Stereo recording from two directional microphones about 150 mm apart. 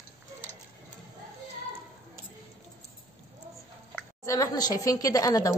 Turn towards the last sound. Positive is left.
turn(degrees=25)  # may be behind; listen again after turning